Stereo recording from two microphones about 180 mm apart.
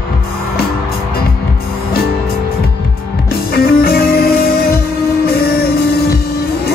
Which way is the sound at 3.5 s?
55° left (ahead or behind).